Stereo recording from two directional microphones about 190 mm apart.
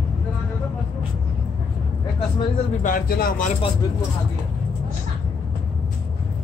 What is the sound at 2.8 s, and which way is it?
Speech, 45° left (ahead or behind).